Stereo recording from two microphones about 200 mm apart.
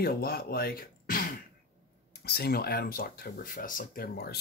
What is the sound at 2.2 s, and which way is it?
Speech, 50° left (ahead or behind).